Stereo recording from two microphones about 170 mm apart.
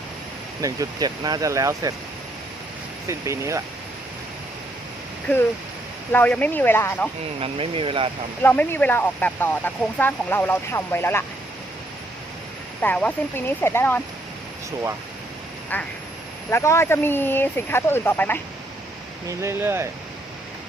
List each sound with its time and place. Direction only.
0.6 s speech: 20° right (ahead or behind)
3.1 s speech: 15° right (ahead or behind)
6.1 s speech: 10° left (ahead or behind)
7.3 s speech: 35° right (ahead or behind)
8.4 s speech: 10° left (ahead or behind)
12.8 s speech: 10° left (ahead or behind)
15.7 s speech: 10° left (ahead or behind)
19.3 s speech: 15° right (ahead or behind)